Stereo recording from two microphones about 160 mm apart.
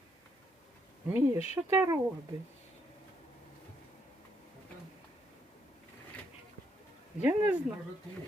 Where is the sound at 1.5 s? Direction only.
15° right (ahead or behind).